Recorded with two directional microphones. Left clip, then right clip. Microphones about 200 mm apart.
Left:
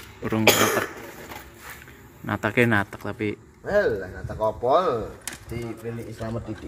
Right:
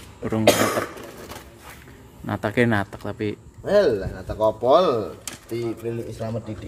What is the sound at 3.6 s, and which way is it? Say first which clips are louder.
Speech: right 4 dB; 60° right (ahead or behind).